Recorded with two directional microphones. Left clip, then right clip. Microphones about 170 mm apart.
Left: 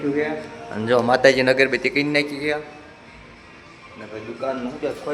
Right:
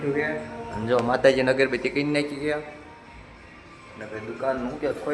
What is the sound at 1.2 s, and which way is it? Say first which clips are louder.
A man's voice: left 3 dB; 5° left (ahead or behind).